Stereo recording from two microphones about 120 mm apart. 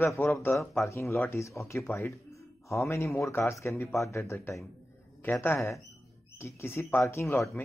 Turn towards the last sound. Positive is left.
turn(degrees=20)  # may be behind; listen again after turning